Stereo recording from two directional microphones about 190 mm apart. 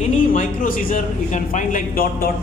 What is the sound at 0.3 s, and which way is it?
A man's voice, 45° left (ahead or behind).